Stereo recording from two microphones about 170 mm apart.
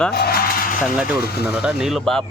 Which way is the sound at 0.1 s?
65° left (ahead or behind).